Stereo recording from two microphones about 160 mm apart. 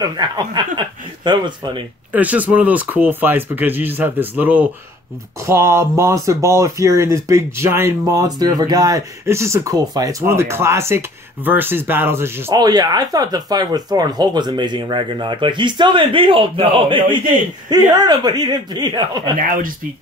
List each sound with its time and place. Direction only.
0.0 s speech: 25° right (ahead or behind)
2.1 s speech: 10° right (ahead or behind); by 19.3 s 25° right (ahead or behind)
19.3 s speech: 60° right (ahead or behind)